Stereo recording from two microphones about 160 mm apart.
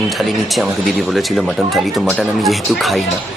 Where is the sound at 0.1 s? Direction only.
Centre (ahead or behind).